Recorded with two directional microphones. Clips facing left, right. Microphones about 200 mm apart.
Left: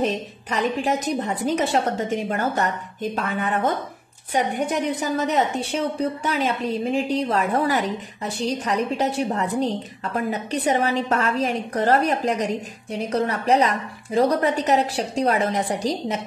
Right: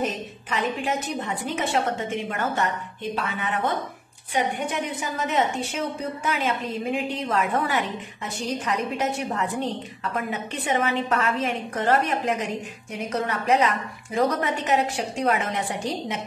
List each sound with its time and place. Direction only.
0.0 s a woman's voice: 35° left (ahead or behind)